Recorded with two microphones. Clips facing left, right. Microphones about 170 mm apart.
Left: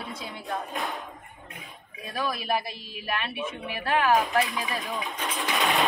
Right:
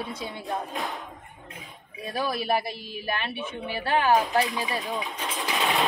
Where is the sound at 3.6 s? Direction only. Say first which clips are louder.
Right 1 dB; 30° right (ahead or behind).